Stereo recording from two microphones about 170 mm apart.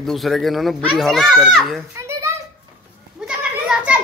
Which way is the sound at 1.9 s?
15° right (ahead or behind).